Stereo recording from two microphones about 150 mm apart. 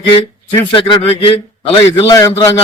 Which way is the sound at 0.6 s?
30° left (ahead or behind).